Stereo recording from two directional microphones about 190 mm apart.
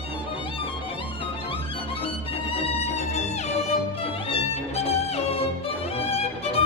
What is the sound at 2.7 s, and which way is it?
Music, 35° left (ahead or behind).